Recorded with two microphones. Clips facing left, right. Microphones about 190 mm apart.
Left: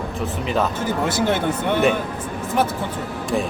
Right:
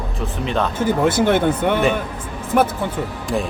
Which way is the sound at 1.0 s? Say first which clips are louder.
Right 5 dB; 55° right (ahead or behind).